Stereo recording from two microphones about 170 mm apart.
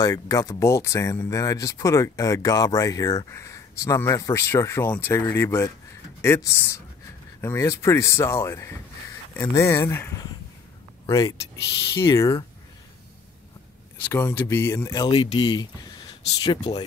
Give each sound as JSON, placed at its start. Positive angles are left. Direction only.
{"t": 0.0, "sound": "speech", "side_deg": 20}
{"t": 14.0, "sound": "speech", "side_deg": 15}